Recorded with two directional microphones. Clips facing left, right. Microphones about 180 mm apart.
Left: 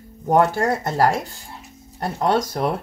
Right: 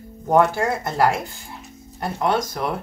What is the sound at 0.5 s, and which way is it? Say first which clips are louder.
Speech: left 1 dB; 40° left (ahead or behind).